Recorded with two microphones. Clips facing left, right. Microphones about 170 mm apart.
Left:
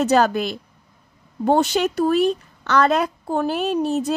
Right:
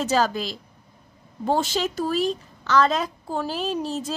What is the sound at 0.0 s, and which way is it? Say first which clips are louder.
A woman's voice: left 5 dB; 60° left (ahead or behind).